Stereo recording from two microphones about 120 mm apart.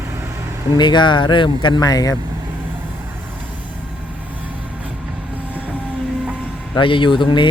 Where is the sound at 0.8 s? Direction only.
40° left (ahead or behind).